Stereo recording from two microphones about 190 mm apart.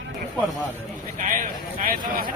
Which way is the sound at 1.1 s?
45° right (ahead or behind).